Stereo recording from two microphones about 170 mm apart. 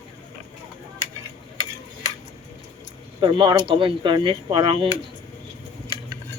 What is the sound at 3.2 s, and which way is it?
Speech, 25° right (ahead or behind).